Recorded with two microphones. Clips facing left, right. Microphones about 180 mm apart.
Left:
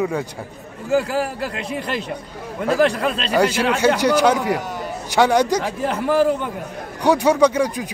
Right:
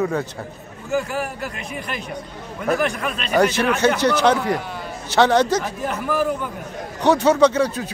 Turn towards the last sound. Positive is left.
turn(degrees=15)  # may be behind; listen again after turning